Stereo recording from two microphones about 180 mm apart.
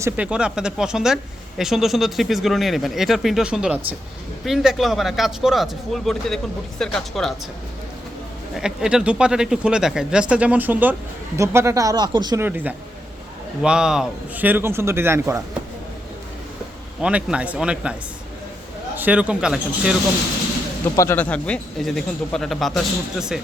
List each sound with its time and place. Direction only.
0.0 s speech: 5° right (ahead or behind)
8.5 s speech: 5° right (ahead or behind); by 12.4 s 25° right (ahead or behind)
12.4 s speech: 10° right (ahead or behind)
17.0 s speech: 5° right (ahead or behind)
18.9 s speech: 10° right (ahead or behind)
20.9 s speech: 15° left (ahead or behind); by 23.4 s 5° right (ahead or behind)